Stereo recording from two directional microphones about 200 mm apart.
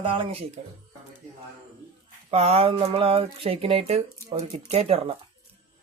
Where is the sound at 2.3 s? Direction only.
30° right (ahead or behind).